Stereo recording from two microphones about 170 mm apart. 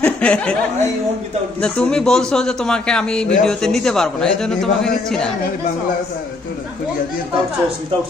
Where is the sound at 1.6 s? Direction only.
5° left (ahead or behind).